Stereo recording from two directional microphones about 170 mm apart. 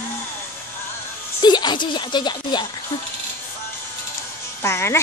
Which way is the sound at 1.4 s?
25° left (ahead or behind).